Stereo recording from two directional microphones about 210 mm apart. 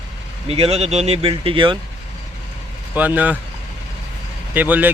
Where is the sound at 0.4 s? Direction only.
30° right (ahead or behind).